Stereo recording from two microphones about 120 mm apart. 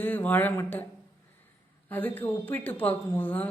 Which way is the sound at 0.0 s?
15° left (ahead or behind).